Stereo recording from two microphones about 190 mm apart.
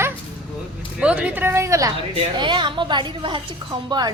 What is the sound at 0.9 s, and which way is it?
A woman's voice, 5° right (ahead or behind).